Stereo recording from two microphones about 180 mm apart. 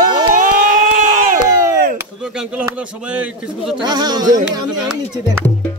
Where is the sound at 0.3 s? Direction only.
50° right (ahead or behind).